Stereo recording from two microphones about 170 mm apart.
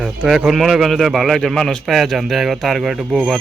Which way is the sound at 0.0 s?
Centre (ahead or behind).